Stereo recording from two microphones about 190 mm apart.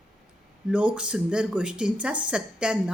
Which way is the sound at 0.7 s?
5° right (ahead or behind).